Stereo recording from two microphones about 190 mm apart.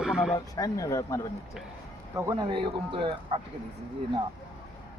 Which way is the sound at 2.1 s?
25° right (ahead or behind).